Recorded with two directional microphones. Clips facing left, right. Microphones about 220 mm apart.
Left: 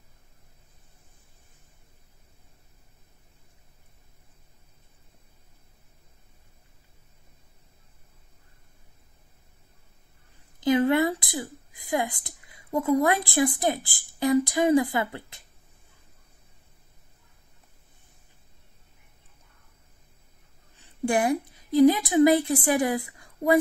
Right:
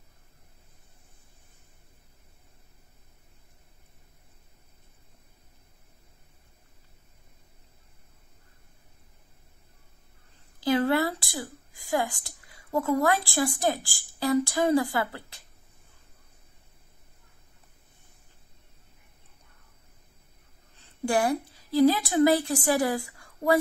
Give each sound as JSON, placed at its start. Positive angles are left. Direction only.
{"t": 10.6, "sound": "a woman's voice", "side_deg": 20}
{"t": 20.7, "sound": "a woman's voice", "side_deg": 15}